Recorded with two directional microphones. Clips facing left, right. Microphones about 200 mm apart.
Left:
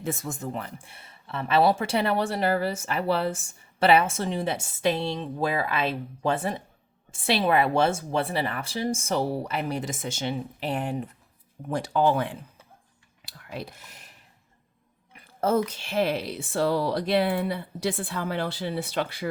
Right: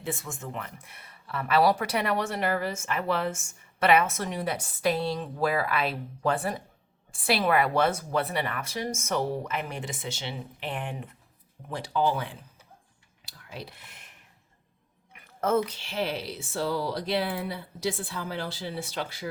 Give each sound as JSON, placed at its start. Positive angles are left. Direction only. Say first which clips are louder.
{"t": 0.0, "sound": "speech", "louder": "left 4 dB", "side_deg": 40}
{"t": 11.7, "sound": "speech", "louder": "left 4 dB", "side_deg": 50}
{"t": 13.2, "sound": "clicking", "louder": "left 5 dB", "side_deg": 50}
{"t": 15.1, "sound": "a sound", "louder": "left 2 dB", "side_deg": 30}
{"t": 15.6, "sound": "speech", "louder": "left 5 dB", "side_deg": 50}